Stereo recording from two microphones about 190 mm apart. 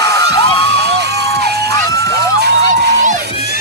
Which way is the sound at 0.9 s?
60° right (ahead or behind).